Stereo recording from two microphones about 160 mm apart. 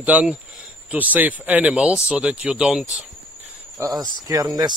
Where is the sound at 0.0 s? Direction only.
5° right (ahead or behind).